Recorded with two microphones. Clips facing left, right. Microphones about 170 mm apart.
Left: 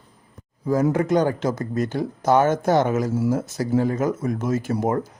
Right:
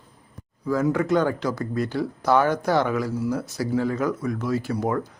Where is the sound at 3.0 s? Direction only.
45° left (ahead or behind).